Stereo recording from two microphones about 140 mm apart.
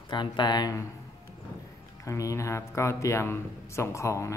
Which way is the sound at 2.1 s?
20° left (ahead or behind).